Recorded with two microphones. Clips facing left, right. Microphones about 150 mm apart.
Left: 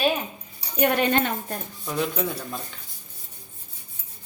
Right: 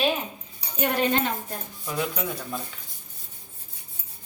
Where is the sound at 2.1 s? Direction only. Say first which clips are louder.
Left 3 dB; centre (ahead or behind).